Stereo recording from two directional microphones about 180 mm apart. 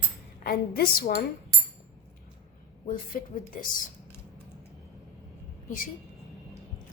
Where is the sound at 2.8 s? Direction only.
50° left (ahead or behind).